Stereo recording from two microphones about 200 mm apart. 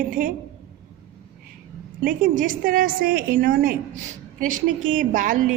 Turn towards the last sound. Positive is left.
turn(degrees=-40)  # may be behind; listen again after turning